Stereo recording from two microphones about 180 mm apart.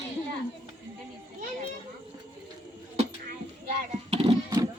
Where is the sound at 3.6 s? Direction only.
35° right (ahead or behind).